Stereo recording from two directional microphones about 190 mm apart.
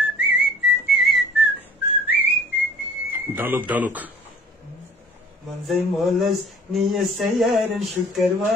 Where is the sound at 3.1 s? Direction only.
10° right (ahead or behind).